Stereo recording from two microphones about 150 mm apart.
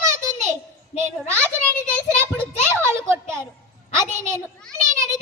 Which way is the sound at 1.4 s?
10° left (ahead or behind).